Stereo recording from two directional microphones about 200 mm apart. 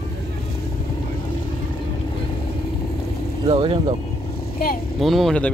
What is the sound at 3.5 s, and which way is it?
Speech, 25° right (ahead or behind).